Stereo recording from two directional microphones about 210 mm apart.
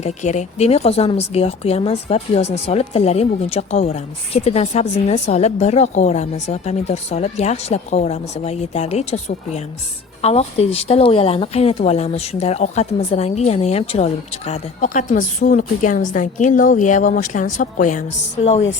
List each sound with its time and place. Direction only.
0.0 s speech: 35° left (ahead or behind)